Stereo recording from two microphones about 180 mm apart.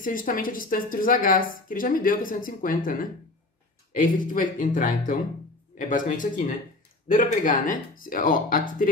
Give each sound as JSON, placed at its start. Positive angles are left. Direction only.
{"t": 0.0, "sound": "a woman's voice", "side_deg": 50}